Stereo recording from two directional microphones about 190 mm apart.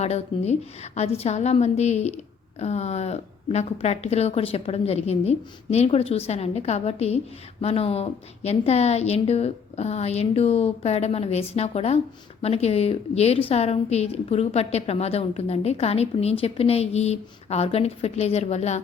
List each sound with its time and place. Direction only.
0.0 s a woman's voice: 35° left (ahead or behind)